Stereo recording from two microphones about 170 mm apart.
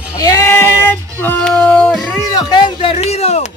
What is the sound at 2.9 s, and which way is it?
Speech, 40° left (ahead or behind).